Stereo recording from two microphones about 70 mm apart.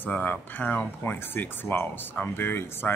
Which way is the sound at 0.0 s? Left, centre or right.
Left.